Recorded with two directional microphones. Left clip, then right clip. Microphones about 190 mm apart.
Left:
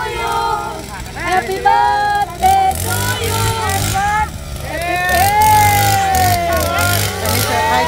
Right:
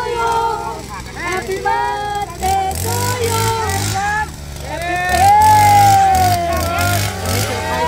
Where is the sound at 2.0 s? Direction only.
45° left (ahead or behind).